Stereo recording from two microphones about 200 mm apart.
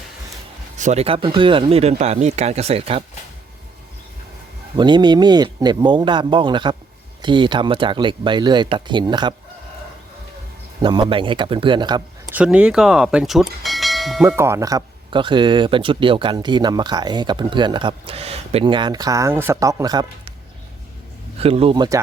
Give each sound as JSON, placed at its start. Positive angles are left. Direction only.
{"t": 0.8, "sound": "speech", "side_deg": -35}
{"t": 4.8, "sound": "speech", "side_deg": -20}
{"t": 10.8, "sound": "speech", "side_deg": -25}
{"t": 12.3, "sound": "speech", "side_deg": -5}
{"t": 14.3, "sound": "speech", "side_deg": -15}
{"t": 21.3, "sound": "speech", "side_deg": -30}